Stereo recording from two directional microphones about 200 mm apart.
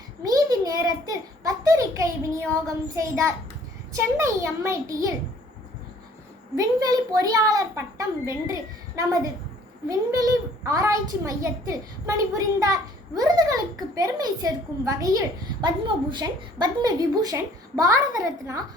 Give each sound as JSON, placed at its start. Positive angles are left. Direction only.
{"t": 0.3, "sound": "a sound", "side_deg": -20}
{"t": 2.6, "sound": "a child's voice", "side_deg": -15}
{"t": 6.6, "sound": "a child's voice", "side_deg": -20}
{"t": 9.9, "sound": "a child's voice", "side_deg": -15}